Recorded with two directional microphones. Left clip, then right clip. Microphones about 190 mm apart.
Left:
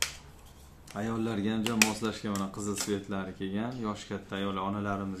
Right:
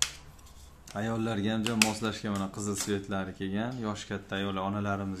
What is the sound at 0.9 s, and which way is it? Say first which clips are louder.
Speech: right 1 dB; 30° right (ahead or behind).